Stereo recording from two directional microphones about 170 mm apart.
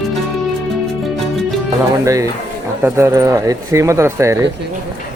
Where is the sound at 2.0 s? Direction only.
20° right (ahead or behind).